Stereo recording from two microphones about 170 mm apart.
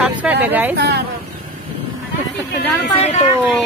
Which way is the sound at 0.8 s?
80° right.